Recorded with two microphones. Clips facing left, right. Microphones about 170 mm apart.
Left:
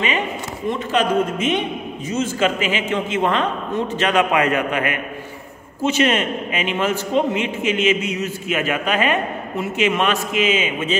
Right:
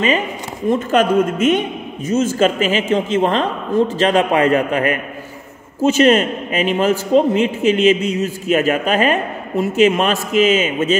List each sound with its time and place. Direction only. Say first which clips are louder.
0.7 s a man's voice: right 5 dB; 45° right (ahead or behind)